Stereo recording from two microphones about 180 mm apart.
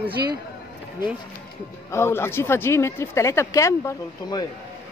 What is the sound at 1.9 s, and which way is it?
Speech, 15° left (ahead or behind).